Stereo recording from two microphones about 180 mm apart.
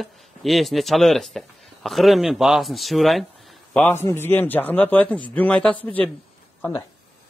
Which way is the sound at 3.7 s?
10° left (ahead or behind).